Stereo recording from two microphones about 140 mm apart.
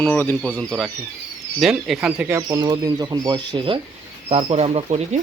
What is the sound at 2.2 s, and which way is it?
Speech, 20° right (ahead or behind).